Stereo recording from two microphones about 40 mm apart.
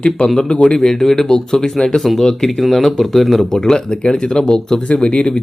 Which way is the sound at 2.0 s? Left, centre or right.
Centre.